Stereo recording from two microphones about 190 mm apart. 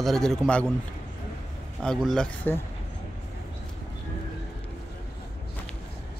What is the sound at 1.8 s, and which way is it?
Speech, 5° left (ahead or behind).